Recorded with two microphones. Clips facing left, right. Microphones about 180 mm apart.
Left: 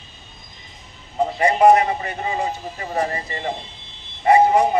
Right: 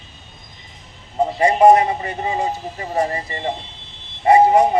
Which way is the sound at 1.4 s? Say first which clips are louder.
Right 2 dB; 25° right (ahead or behind).